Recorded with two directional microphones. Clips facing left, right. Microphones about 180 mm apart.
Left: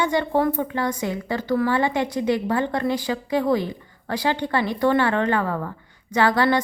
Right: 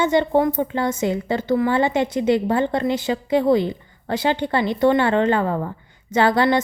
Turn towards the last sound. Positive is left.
turn(degrees=-25)  # may be behind; listen again after turning